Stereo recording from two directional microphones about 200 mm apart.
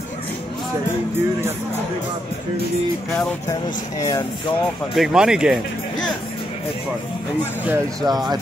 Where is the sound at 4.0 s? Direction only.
15° left (ahead or behind).